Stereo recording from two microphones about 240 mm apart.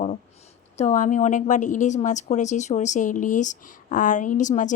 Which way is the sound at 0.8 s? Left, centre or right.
Left.